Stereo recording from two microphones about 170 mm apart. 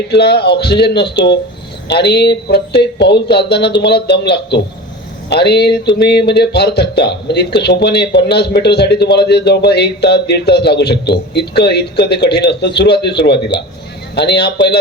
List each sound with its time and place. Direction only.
0.1 s speech: 75° left (ahead or behind)